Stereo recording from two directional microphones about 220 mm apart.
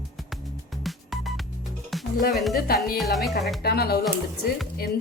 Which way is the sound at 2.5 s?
45° left (ahead or behind).